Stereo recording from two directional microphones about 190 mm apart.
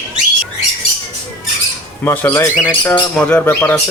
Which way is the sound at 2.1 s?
15° left (ahead or behind).